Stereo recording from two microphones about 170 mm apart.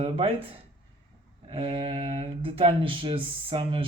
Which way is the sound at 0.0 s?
35° right (ahead or behind).